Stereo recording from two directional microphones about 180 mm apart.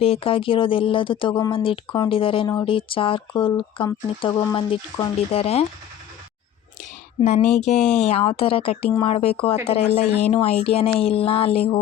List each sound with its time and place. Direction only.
0.0 s speech: 30° left (ahead or behind)
7.2 s speech: 40° left (ahead or behind)
7.8 s speech: 5° left (ahead or behind)
8.0 s speech: 35° left (ahead or behind)